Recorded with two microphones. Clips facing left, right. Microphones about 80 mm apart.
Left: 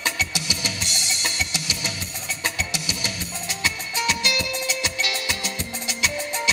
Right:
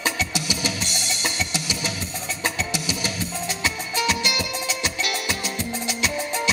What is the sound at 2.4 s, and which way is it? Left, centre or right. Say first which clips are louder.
Music: right 2 dB; centre.